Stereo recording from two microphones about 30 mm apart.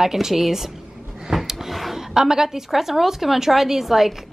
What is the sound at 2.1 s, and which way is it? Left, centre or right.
A woman's voice, centre.